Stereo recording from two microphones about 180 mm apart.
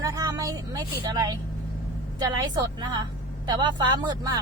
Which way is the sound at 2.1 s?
25° right (ahead or behind).